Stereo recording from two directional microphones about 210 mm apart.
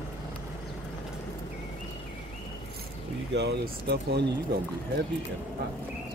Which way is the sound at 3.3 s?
55° right (ahead or behind).